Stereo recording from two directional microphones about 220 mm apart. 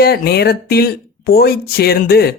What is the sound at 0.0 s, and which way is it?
Speech, 45° left (ahead or behind).